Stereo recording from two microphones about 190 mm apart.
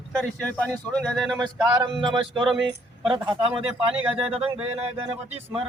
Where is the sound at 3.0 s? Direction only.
10° right (ahead or behind).